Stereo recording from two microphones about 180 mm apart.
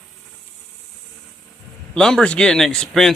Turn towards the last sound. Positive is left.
turn(degrees=5)  # may be behind; listen again after turning